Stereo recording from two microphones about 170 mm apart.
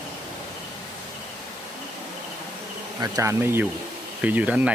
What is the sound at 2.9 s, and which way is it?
Bee, 20° right (ahead or behind).